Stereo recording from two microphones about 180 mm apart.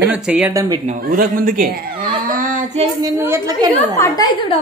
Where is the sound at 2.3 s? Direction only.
50° right (ahead or behind).